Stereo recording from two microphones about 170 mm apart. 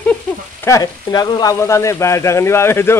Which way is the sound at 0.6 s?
20° left (ahead or behind).